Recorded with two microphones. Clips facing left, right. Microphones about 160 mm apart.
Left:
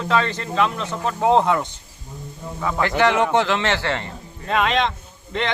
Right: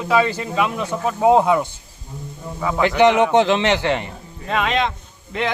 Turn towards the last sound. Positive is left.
turn(degrees=-5)  # may be behind; listen again after turning